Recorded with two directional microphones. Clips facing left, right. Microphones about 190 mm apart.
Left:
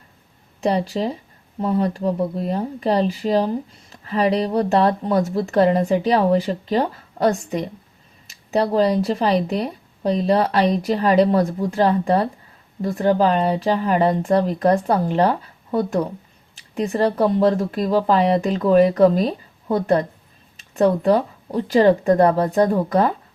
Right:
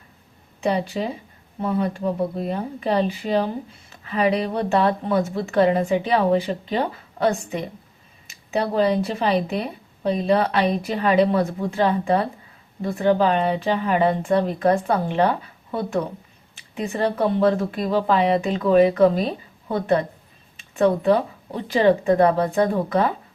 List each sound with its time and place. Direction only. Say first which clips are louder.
0.6 s speech: left 2 dB; 40° left (ahead or behind)
8.3 s a sound: left 4 dB; 40° left (ahead or behind)
9.0 s speech: left 2 dB; 40° left (ahead or behind)